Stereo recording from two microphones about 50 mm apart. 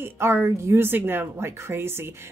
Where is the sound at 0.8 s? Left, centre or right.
Right.